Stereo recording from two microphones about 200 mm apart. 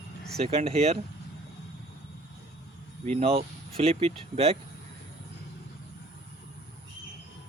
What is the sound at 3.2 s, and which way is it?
Speech, 30° right (ahead or behind).